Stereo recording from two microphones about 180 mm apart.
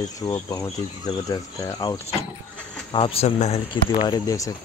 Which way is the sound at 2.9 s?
30° left (ahead or behind).